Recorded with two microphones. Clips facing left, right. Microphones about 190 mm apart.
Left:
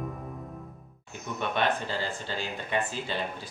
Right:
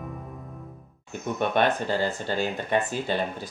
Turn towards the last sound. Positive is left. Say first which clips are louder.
# right 5 dB
turn(degrees=-50)  # may be behind; listen again after turning